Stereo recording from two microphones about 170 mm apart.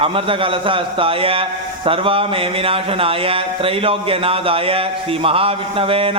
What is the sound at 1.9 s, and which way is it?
Speech, 30° right (ahead or behind).